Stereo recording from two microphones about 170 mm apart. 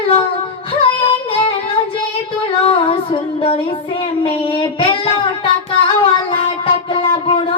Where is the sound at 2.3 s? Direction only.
30° left (ahead or behind).